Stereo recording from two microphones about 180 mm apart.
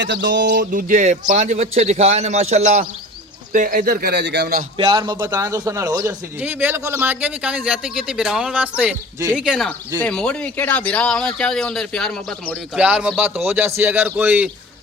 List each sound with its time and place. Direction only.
0.0 s a man's voice: 75° right (ahead or behind)
4.9 s speech: 25° right (ahead or behind)
5.2 s a man's voice: 15° right (ahead or behind)